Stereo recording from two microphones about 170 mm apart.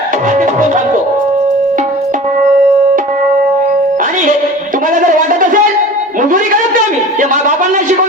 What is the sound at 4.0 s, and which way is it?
Music, 50° right (ahead or behind).